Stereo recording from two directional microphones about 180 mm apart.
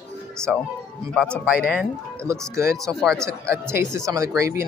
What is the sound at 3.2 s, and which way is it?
A man's voice, 15° right (ahead or behind).